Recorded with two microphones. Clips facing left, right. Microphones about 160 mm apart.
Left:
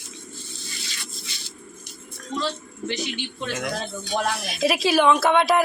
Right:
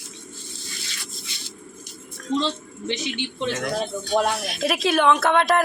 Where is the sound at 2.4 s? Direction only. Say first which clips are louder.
Right 2 dB; 20° right (ahead or behind).